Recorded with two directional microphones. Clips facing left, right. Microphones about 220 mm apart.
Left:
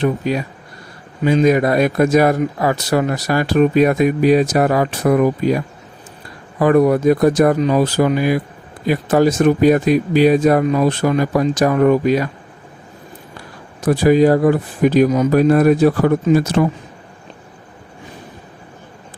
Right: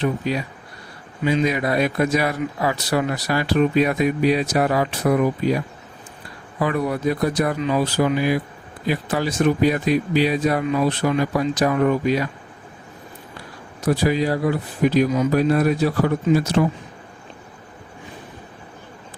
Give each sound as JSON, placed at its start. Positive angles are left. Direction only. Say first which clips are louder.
{"t": 0.0, "sound": "speech", "louder": "left 4 dB", "side_deg": 50}
{"t": 13.8, "sound": "speech", "louder": "left 8 dB", "side_deg": 50}